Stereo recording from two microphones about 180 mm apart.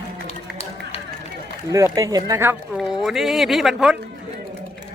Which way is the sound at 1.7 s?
15° right (ahead or behind).